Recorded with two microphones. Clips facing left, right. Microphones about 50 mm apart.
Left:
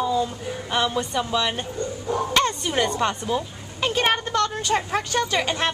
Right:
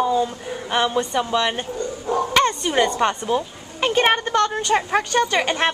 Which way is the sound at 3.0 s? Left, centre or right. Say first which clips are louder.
Right 3 dB; centre.